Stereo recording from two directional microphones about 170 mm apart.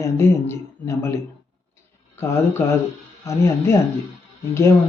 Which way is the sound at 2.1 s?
15° left (ahead or behind).